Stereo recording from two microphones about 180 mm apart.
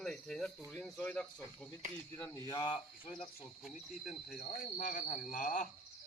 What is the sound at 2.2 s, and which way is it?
Speech, 15° left (ahead or behind).